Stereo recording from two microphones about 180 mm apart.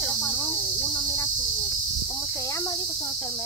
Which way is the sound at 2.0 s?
15° left (ahead or behind).